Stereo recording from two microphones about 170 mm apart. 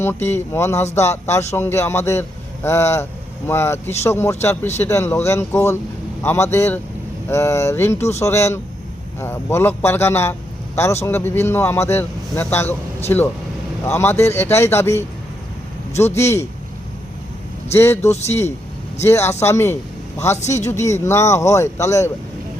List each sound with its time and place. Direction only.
0.0 s speech: 15° left (ahead or behind)
16.1 s speech: 15° left (ahead or behind)
17.7 s speech: 15° left (ahead or behind)